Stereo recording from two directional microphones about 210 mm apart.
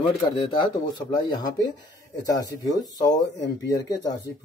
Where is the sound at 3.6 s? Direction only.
15° left (ahead or behind).